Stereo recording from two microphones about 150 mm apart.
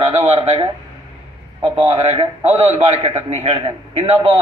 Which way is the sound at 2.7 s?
40° right (ahead or behind).